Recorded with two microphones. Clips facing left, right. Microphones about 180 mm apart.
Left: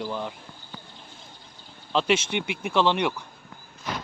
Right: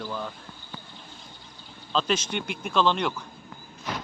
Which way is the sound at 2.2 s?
65° left (ahead or behind).